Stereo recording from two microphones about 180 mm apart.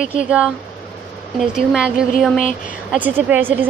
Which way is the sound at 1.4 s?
5° right (ahead or behind).